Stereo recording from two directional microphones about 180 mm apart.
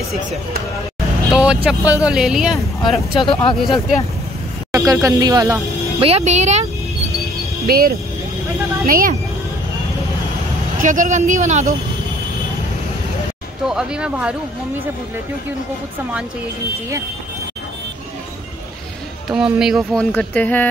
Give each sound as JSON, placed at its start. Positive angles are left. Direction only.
{"t": 1.3, "sound": "speech", "side_deg": -5}
{"t": 4.9, "sound": "speech", "side_deg": -20}
{"t": 6.0, "sound": "speech", "side_deg": -35}
{"t": 7.6, "sound": "speech", "side_deg": -55}
{"t": 10.8, "sound": "speech", "side_deg": -45}
{"t": 13.7, "sound": "speech", "side_deg": -5}
{"t": 19.2, "sound": "speech", "side_deg": -5}